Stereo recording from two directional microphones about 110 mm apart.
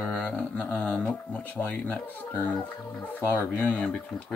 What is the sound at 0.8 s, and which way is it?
Speech, 10° left (ahead or behind).